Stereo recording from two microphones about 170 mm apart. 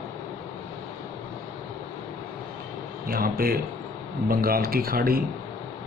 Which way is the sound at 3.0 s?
60° right (ahead or behind).